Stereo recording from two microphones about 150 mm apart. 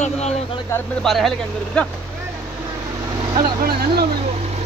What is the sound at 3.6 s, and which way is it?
Speech, 90° right.